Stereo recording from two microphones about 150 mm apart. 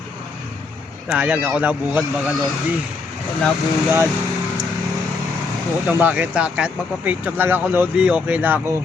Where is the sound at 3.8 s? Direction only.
15° right (ahead or behind).